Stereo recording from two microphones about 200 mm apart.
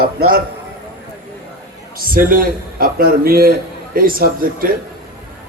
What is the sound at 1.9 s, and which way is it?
A man's voice, 45° right (ahead or behind).